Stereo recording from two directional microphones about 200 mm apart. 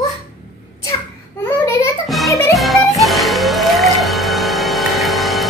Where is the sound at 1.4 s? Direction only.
10° left (ahead or behind).